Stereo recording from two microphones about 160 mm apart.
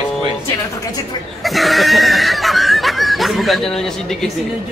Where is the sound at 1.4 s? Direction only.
Centre (ahead or behind).